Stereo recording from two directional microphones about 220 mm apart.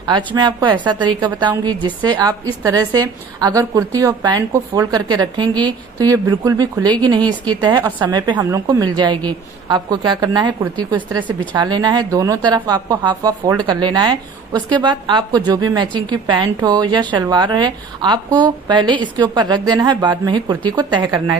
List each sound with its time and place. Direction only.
0.0 s a woman's voice: 20° right (ahead or behind)